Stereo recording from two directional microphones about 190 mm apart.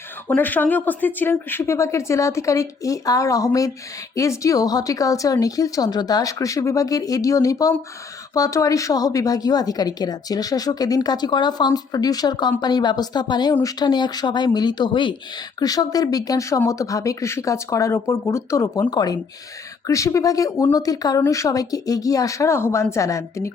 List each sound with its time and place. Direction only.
0.3 s speech: 10° left (ahead or behind)